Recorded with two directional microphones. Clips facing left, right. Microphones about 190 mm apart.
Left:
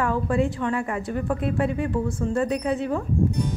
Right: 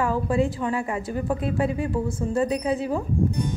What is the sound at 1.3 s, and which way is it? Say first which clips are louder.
Speech: even; 30° right (ahead or behind).